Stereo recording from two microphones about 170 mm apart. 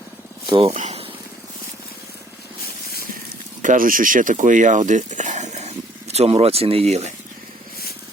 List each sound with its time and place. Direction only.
0.4 s speech: 30° right (ahead or behind)
0.7 s speech: 45° right (ahead or behind)
3.6 s speech: 50° right (ahead or behind)